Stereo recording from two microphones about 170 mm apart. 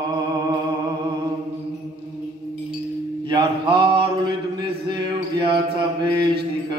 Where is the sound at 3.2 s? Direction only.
30° right (ahead or behind).